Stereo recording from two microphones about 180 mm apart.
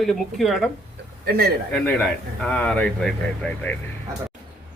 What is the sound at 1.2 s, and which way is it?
Speech, 60° right (ahead or behind).